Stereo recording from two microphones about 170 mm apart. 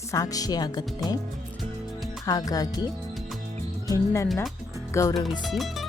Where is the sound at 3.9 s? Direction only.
15° left (ahead or behind).